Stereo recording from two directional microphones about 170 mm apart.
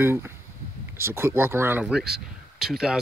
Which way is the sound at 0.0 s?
15° right (ahead or behind).